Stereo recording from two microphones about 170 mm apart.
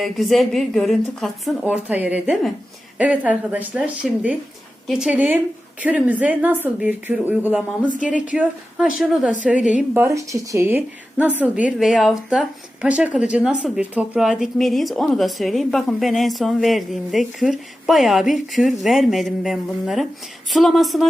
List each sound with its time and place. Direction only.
0.0 s a woman's voice: centre (ahead or behind)